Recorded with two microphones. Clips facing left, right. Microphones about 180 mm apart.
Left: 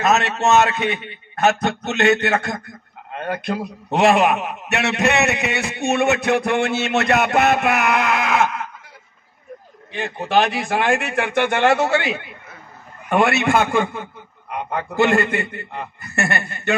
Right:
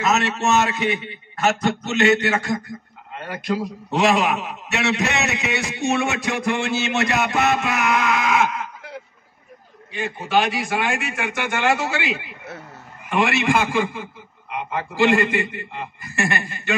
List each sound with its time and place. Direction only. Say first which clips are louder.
0.0 s a man's voice: left 3 dB; 60° left (ahead or behind)
10.2 s a man's voice: left 2 dB; 55° left (ahead or behind)
13.1 s a man's voice: left 3 dB; 55° left (ahead or behind)